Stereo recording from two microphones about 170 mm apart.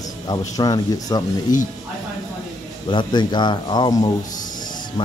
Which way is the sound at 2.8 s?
25° left (ahead or behind).